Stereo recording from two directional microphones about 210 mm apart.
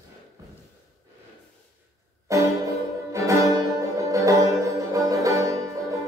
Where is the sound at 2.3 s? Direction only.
15° right (ahead or behind).